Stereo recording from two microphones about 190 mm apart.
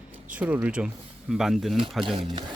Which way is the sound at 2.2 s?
20° right (ahead or behind).